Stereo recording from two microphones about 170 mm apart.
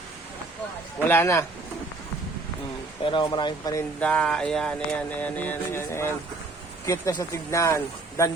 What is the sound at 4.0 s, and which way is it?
Music, 5° left (ahead or behind).